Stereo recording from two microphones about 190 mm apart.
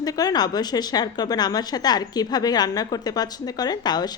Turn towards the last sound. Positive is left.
turn(degrees=20)  # may be behind; listen again after turning